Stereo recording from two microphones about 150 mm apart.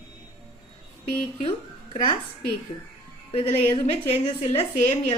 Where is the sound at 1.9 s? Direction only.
35° left (ahead or behind).